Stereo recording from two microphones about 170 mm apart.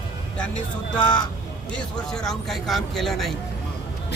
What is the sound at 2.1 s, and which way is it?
Speech, centre (ahead or behind).